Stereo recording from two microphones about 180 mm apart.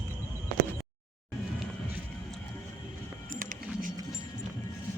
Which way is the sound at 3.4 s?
50° right (ahead or behind).